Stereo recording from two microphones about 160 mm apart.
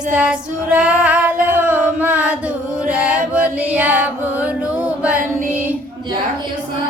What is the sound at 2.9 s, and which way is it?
Music, 10° right (ahead or behind).